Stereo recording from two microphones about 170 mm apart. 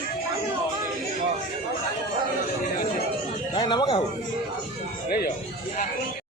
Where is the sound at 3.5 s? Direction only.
25° left (ahead or behind).